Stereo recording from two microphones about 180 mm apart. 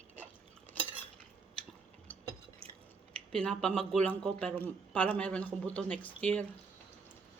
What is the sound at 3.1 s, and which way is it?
A man's voice, 5° left (ahead or behind).